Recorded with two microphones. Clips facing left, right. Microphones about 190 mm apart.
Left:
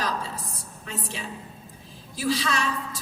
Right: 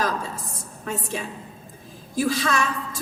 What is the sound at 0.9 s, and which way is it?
A woman's voice, 50° right (ahead or behind).